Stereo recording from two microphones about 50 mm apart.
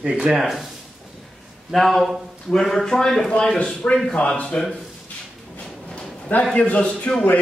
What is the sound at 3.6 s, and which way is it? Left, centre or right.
Speech, left.